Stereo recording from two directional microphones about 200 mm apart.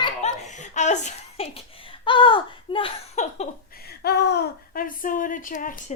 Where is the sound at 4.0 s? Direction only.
55° left (ahead or behind); by 5.9 s 40° left (ahead or behind).